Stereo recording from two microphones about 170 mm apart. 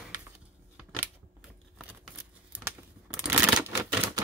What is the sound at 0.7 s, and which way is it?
Scissors, 10° right (ahead or behind).